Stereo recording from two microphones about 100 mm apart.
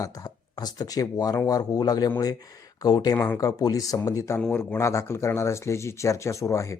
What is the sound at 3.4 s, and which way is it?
Speech, 35° left (ahead or behind).